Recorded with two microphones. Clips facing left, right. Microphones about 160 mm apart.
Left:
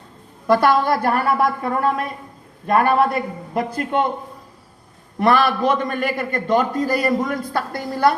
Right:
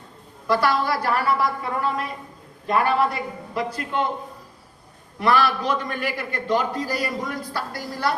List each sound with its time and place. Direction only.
0.4 s a man's voice: 55° left (ahead or behind)
5.2 s a man's voice: 50° left (ahead or behind)